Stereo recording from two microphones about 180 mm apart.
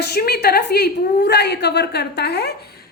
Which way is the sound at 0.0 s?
60° left (ahead or behind).